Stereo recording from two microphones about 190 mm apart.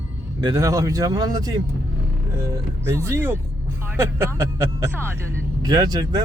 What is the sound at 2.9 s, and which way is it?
Speech, 15° right (ahead or behind).